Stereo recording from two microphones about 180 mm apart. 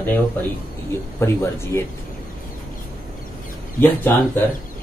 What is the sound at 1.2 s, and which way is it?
Speech, 15° left (ahead or behind).